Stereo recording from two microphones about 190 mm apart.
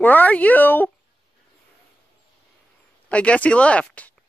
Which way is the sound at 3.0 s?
5° left (ahead or behind).